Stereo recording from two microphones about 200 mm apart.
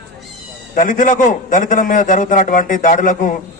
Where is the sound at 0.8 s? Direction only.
40° left (ahead or behind).